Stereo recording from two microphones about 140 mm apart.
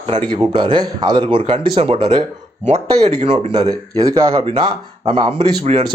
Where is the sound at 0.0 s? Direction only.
40° right (ahead or behind).